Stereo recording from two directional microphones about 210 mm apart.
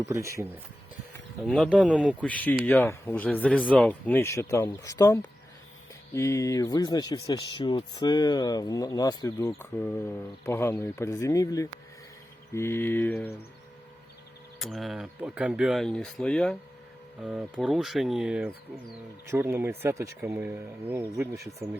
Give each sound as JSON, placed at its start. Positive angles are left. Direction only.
{"t": 0.1, "sound": "speech", "side_deg": -15}
{"t": 1.5, "sound": "speech", "side_deg": 0}
{"t": 2.2, "sound": "speech", "side_deg": 5}
{"t": 14.6, "sound": "speech", "side_deg": 0}